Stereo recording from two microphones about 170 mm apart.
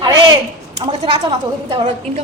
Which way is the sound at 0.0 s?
25° right (ahead or behind).